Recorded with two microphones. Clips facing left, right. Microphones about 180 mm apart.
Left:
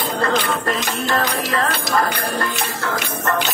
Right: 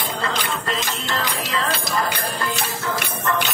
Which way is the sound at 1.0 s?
55° left (ahead or behind).